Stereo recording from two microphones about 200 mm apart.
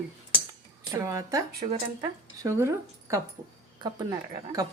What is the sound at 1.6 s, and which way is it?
Speech, 35° right (ahead or behind).